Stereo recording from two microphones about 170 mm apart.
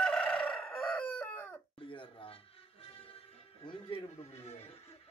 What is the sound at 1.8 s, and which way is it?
Music, 30° left (ahead or behind).